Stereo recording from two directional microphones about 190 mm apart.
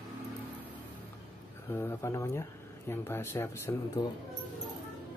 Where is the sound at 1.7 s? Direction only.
15° left (ahead or behind).